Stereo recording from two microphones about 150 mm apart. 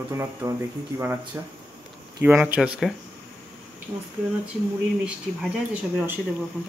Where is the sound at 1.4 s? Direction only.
20° right (ahead or behind).